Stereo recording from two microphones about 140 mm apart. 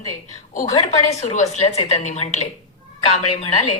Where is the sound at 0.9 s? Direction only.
55° left (ahead or behind).